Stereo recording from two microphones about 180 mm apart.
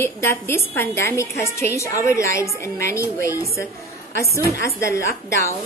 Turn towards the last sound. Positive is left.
turn(degrees=15)  # may be behind; listen again after turning